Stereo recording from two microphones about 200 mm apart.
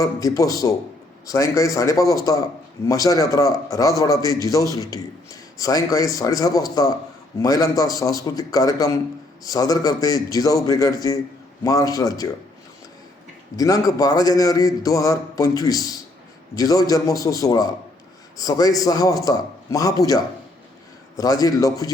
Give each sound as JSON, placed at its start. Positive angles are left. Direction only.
{"t": 0.0, "sound": "a man's voice", "side_deg": 15}
{"t": 13.6, "sound": "a man's voice", "side_deg": 20}